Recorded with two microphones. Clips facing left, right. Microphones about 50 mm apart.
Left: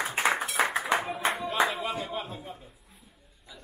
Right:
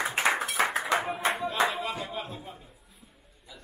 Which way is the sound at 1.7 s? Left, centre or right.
Centre.